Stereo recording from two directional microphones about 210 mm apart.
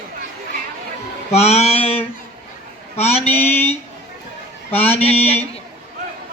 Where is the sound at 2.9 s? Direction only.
30° left (ahead or behind).